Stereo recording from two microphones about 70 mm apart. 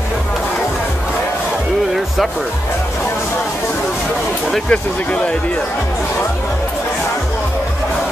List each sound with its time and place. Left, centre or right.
4.6 s speech: centre